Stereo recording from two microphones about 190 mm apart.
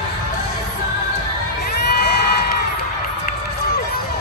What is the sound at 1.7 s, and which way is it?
Crowd, 55° left (ahead or behind).